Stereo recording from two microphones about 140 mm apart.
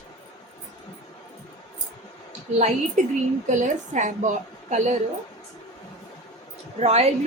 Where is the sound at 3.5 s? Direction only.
65° right (ahead or behind).